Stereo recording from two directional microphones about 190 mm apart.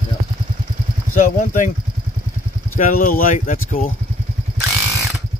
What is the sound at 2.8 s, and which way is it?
Speech, 45° left (ahead or behind).